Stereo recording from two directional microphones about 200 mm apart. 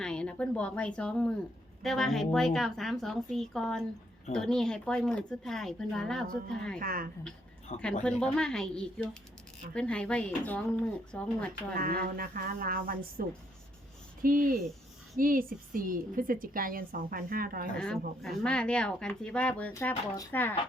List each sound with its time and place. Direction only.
0.0 s a woman's voice: 5° left (ahead or behind)
6.7 s a woman's voice: 45° right (ahead or behind)
7.7 s a woman's voice: 35° left (ahead or behind)
8.0 s speech: 5° left (ahead or behind)
11.8 s a woman's voice: 45° right (ahead or behind)
17.7 s speech: 5° left (ahead or behind)